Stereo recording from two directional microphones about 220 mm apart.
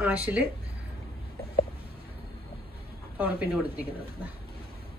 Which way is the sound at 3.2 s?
5° right (ahead or behind).